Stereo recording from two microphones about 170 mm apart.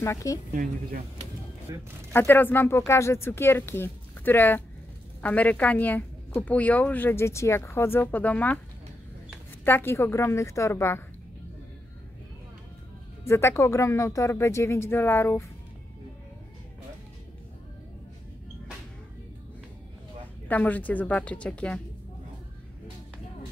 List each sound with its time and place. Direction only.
0.0 s speech: 20° left (ahead or behind)
1.7 s speech: 20° right (ahead or behind)
2.1 s a woman's voice: 15° left (ahead or behind)
9.7 s a woman's voice: 15° left (ahead or behind)
13.2 s a woman's voice: 15° left (ahead or behind)
20.4 s a woman's voice: 10° left (ahead or behind)